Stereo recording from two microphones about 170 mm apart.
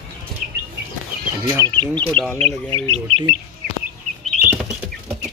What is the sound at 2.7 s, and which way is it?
Speech, 30° right (ahead or behind).